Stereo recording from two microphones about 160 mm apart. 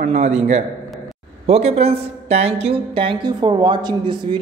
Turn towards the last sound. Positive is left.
turn(degrees=-30)  # may be behind; listen again after turning